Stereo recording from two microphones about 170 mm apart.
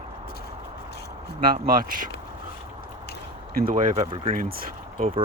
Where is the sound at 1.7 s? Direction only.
55° right (ahead or behind).